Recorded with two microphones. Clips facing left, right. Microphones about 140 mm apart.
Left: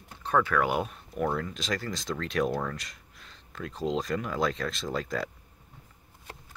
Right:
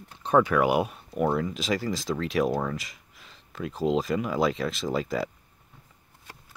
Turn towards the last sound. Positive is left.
turn(degrees=-5)  # may be behind; listen again after turning